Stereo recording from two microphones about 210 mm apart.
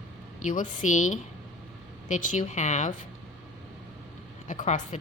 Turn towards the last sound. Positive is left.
turn(degrees=35)  # may be behind; listen again after turning